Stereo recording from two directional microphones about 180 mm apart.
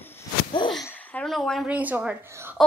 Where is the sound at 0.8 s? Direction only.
10° left (ahead or behind); by 2.6 s 15° right (ahead or behind).